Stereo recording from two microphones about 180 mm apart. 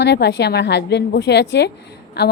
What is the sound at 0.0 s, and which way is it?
A woman's voice, 70° left (ahead or behind).